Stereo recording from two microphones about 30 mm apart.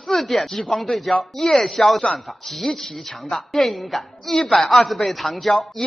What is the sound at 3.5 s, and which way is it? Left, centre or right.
A woman's voice, centre.